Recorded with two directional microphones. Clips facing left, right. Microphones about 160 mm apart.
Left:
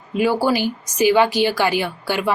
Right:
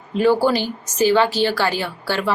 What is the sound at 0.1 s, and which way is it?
Speech, 10° left (ahead or behind).